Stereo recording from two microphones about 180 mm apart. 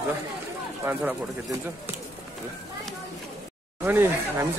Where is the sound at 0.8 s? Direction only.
15° right (ahead or behind).